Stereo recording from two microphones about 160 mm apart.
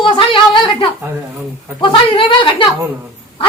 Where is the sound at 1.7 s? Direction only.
30° left (ahead or behind).